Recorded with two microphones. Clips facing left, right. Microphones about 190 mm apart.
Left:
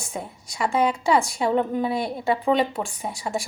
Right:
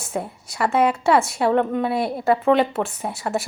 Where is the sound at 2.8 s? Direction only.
5° right (ahead or behind).